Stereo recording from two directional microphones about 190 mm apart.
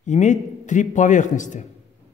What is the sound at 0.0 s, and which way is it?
A man's voice, 40° left (ahead or behind).